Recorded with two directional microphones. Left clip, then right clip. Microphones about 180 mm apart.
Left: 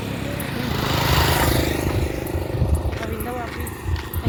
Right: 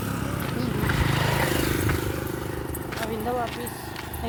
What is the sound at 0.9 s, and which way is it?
Vehicle, 70° left (ahead or behind).